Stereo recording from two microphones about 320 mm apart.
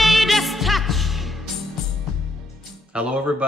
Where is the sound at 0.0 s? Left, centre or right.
Centre.